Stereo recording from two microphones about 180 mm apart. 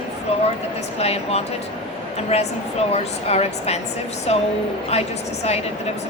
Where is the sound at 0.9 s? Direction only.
35° left (ahead or behind).